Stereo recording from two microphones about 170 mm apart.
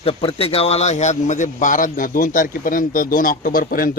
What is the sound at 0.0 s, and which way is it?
A man's voice, 35° left (ahead or behind).